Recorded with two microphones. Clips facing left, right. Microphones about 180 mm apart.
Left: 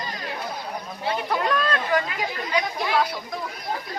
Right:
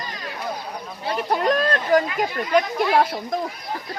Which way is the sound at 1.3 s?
40° right (ahead or behind).